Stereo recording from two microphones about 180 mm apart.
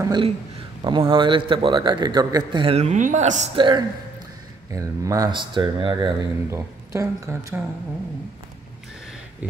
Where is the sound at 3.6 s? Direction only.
25° right (ahead or behind).